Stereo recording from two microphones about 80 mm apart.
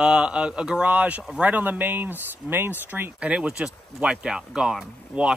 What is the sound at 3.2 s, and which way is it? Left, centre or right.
Speech, centre.